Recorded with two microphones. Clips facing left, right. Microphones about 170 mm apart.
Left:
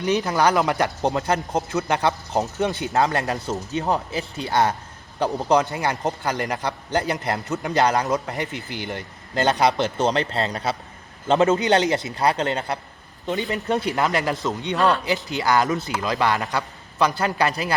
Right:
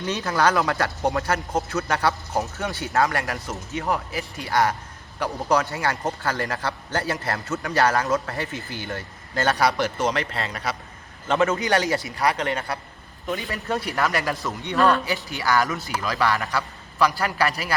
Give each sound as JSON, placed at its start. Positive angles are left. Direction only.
{"t": 0.0, "sound": "a man's voice", "side_deg": 15}